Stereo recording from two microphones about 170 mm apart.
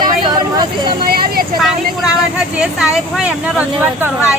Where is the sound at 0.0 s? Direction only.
25° right (ahead or behind).